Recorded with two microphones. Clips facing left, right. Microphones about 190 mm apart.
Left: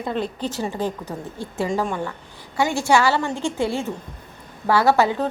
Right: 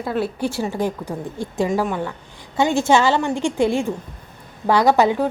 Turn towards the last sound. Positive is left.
turn(degrees=-15)  # may be behind; listen again after turning